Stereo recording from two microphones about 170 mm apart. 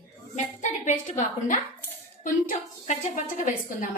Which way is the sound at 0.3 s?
45° left (ahead or behind).